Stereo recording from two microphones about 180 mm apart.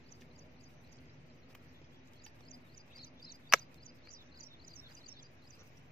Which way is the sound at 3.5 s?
Centre (ahead or behind).